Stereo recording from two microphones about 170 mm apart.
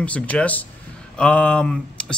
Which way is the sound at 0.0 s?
10° left (ahead or behind).